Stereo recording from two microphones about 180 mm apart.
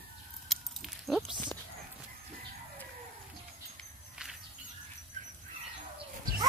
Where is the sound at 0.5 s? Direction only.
Centre (ahead or behind).